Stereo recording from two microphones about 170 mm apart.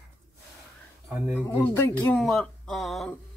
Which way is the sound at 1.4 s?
10° left (ahead or behind).